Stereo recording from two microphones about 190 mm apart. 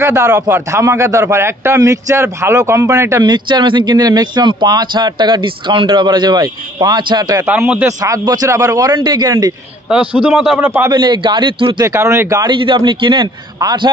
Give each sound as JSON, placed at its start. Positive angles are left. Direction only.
{"t": 0.0, "sound": "a man's voice", "side_deg": -15}
{"t": 7.4, "sound": "a man's voice", "side_deg": -10}
{"t": 9.8, "sound": "a man's voice", "side_deg": -5}
{"t": 10.7, "sound": "a man's voice", "side_deg": -20}
{"t": 11.9, "sound": "a man's voice", "side_deg": -15}